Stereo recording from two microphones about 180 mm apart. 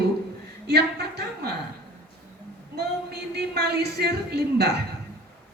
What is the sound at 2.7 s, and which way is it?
Speech, 65° right (ahead or behind).